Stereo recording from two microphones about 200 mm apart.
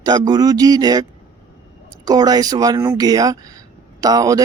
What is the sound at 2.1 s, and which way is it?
Speech, 20° right (ahead or behind).